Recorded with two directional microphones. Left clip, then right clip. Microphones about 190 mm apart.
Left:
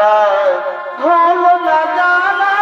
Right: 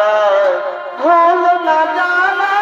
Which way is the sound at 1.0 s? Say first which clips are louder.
Even; 20° right (ahead or behind).